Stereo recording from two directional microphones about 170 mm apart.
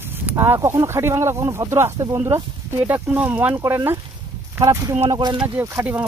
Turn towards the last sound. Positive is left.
turn(degrees=-15)  # may be behind; listen again after turning